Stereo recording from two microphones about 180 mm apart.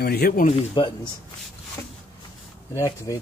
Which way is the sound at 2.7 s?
20° left (ahead or behind).